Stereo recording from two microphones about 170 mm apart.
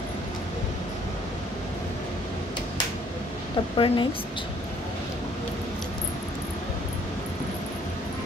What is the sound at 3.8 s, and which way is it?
Speech, 30° left (ahead or behind).